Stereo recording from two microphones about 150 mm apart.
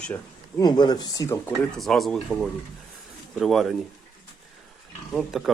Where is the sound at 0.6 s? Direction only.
30° left (ahead or behind).